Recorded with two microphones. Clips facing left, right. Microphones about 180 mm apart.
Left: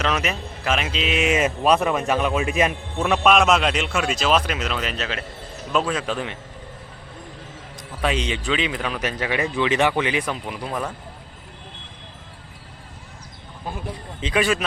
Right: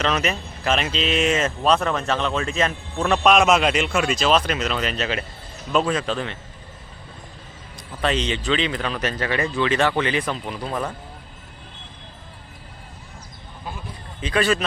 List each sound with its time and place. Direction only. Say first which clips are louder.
0.0 s speech: right 1 dB; 5° left (ahead or behind)
8.0 s speech: right 1 dB; 10° left (ahead or behind)
14.2 s speech: even; 20° left (ahead or behind)